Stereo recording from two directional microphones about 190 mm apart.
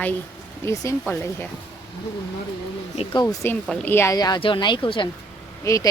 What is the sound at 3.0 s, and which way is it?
A woman's voice, 20° left (ahead or behind).